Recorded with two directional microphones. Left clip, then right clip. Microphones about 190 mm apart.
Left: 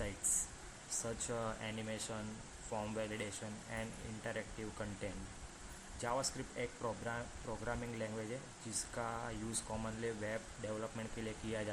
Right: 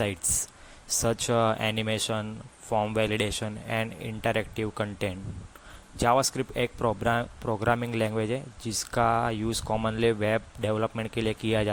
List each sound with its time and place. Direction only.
0.9 s speech: 45° right (ahead or behind)
2.7 s speech: 30° right (ahead or behind)
3.0 s speech: 45° right (ahead or behind)